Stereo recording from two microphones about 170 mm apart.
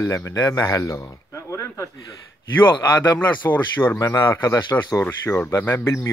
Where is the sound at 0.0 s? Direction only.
15° left (ahead or behind).